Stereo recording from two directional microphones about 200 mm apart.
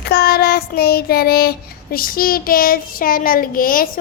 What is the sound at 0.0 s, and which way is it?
Child singing, 50° left (ahead or behind).